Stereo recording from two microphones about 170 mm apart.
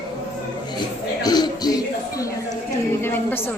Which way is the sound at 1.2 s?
25° left (ahead or behind).